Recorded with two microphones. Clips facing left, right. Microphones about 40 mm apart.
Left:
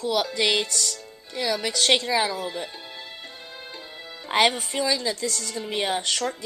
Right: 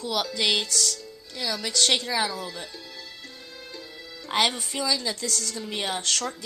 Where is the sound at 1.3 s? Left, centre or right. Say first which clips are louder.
Left 3 dB; left.